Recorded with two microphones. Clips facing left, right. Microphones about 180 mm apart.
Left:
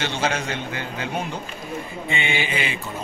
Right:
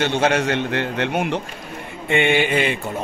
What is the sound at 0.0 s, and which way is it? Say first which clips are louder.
A man's voice: right 6 dB; 60° right (ahead or behind).